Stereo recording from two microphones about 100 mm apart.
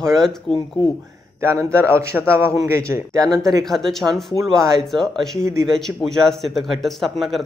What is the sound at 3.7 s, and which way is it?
Speech, 5° left (ahead or behind).